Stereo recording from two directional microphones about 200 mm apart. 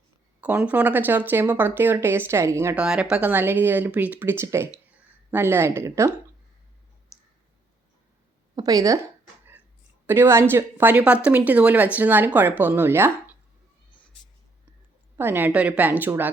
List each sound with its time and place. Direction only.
0.4 s speech: 10° right (ahead or behind)
8.5 s speech: 20° right (ahead or behind)
10.1 s speech: 10° right (ahead or behind)
15.2 s speech: 10° right (ahead or behind)